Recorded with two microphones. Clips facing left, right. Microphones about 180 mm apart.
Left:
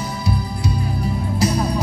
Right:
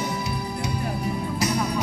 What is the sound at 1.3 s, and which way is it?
Music, 30° left (ahead or behind).